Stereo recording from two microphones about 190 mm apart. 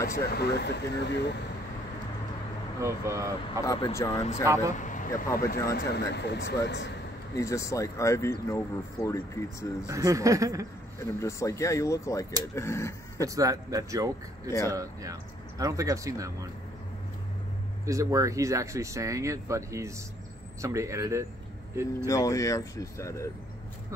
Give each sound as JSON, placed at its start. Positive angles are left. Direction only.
{"t": 0.1, "sound": "speech", "side_deg": 55}
{"t": 2.8, "sound": "speech", "side_deg": -15}
{"t": 3.6, "sound": "speech", "side_deg": 20}
{"t": 4.7, "sound": "speech", "side_deg": 40}
{"t": 5.8, "sound": "speech", "side_deg": 60}
{"t": 7.3, "sound": "speech", "side_deg": 15}
{"t": 9.8, "sound": "speech", "side_deg": -15}
{"t": 11.0, "sound": "speech", "side_deg": 15}
{"t": 13.2, "sound": "speech", "side_deg": -15}
{"t": 17.8, "sound": "speech", "side_deg": -15}
{"t": 22.0, "sound": "speech", "side_deg": 15}